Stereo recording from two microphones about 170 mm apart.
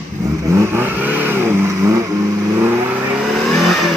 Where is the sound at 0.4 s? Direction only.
15° right (ahead or behind).